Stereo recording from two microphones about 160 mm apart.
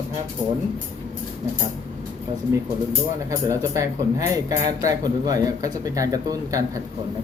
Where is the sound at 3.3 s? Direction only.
20° right (ahead or behind).